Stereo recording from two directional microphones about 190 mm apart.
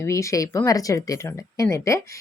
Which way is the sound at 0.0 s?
15° left (ahead or behind).